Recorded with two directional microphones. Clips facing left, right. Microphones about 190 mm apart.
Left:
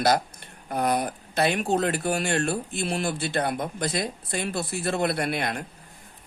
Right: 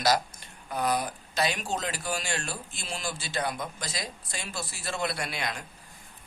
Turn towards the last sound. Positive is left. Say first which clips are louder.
# left 7 dB
turn(degrees=55)  # may be behind; listen again after turning